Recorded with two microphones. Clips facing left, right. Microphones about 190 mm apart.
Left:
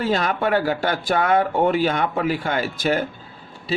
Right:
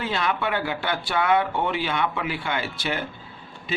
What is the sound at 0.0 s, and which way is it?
A man's voice, 45° left (ahead or behind).